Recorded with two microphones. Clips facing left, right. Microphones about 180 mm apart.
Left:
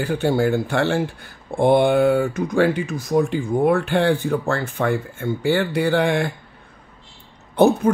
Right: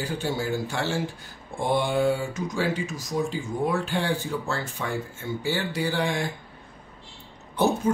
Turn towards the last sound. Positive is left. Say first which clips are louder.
# left 8 dB
turn(degrees=60)  # may be behind; listen again after turning